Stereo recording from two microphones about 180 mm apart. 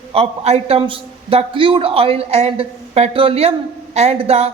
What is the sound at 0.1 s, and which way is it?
A man's voice, 35° right (ahead or behind).